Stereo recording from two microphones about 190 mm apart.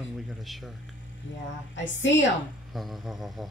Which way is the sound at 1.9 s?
75° left (ahead or behind).